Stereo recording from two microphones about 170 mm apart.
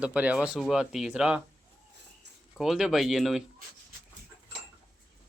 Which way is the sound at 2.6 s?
5° right (ahead or behind).